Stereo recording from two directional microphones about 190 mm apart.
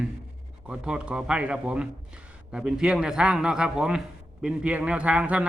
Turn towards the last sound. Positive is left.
turn(degrees=-5)  # may be behind; listen again after turning